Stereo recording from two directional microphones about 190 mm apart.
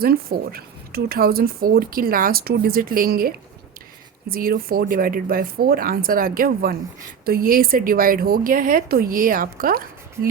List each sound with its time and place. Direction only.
0.0 s speech: 50° right (ahead or behind)